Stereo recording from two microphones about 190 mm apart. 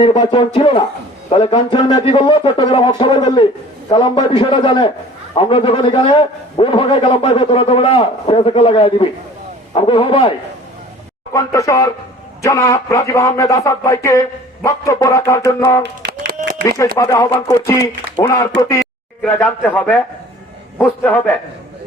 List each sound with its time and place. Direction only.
0.0 s a man's voice: 25° left (ahead or behind)
11.3 s speech: 15° left (ahead or behind)
15.8 s a sound: 55° right (ahead or behind)
17.0 s speech: 15° left (ahead or behind)
19.2 s speech: 5° left (ahead or behind)